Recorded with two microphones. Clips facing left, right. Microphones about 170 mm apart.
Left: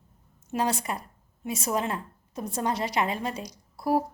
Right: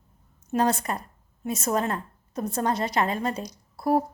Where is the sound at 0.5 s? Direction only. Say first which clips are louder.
Right 4 dB; 10° left (ahead or behind).